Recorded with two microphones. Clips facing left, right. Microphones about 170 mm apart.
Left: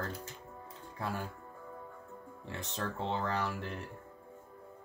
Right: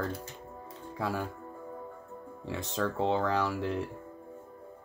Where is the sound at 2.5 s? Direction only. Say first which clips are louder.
Right 7 dB; 90° right.